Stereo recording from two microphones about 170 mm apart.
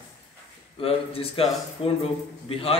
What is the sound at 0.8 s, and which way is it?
A man's voice, 35° left (ahead or behind).